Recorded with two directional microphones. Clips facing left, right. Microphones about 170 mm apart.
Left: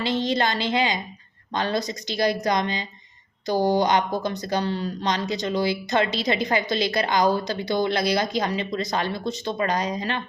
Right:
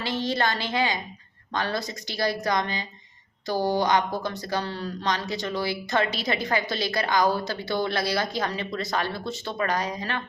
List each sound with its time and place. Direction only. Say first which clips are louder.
0.0 s a woman's voice: left 3 dB; 20° left (ahead or behind)